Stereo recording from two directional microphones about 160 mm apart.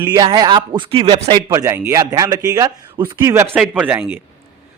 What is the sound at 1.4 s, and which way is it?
A man's voice, 15° right (ahead or behind).